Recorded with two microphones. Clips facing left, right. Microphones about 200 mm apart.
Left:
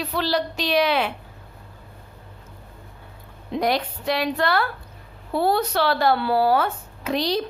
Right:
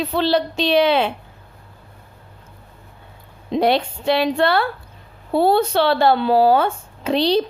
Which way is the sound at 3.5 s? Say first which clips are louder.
Right 5 dB; 25° right (ahead or behind).